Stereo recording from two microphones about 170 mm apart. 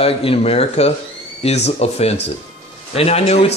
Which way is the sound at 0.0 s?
35° left (ahead or behind).